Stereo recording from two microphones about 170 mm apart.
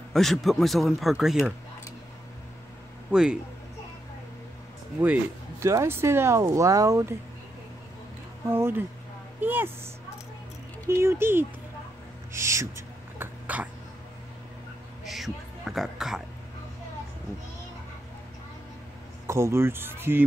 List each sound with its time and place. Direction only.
0.1 s speech: centre (ahead or behind)
3.1 s speech: 5° right (ahead or behind)
5.0 s speech: 15° right (ahead or behind)
8.5 s speech: 15° right (ahead or behind)
10.9 s speech: 15° right (ahead or behind)
12.3 s gasp: 15° right (ahead or behind)
15.0 s a sound: centre (ahead or behind)
19.2 s speech: 15° right (ahead or behind)